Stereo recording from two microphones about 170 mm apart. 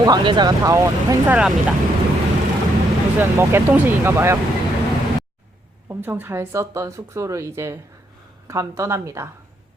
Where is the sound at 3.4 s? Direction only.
15° right (ahead or behind).